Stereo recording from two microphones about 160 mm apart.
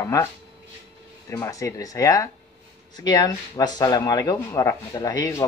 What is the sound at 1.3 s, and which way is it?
Speech, 20° left (ahead or behind).